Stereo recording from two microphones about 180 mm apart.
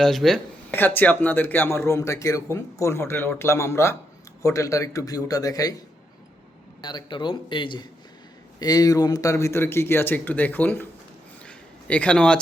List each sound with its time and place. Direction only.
0.0 s a man's voice: centre (ahead or behind); by 5.8 s 20° left (ahead or behind)
6.8 s a man's voice: 25° left (ahead or behind)
11.4 s a sound: 5° left (ahead or behind)